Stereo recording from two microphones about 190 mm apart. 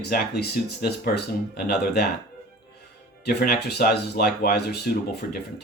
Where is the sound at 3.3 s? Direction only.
55° left (ahead or behind).